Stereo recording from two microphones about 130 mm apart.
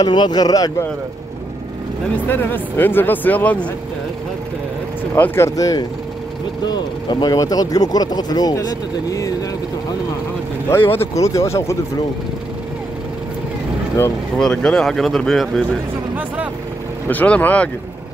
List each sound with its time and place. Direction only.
0.0 s speech: 35° left (ahead or behind)
2.2 s speech: 15° left (ahead or behind)
5.1 s speech: 20° left (ahead or behind)
10.7 s speech: 15° left (ahead or behind)
14.4 s speech: 5° left (ahead or behind)
17.1 s speech: 15° left (ahead or behind)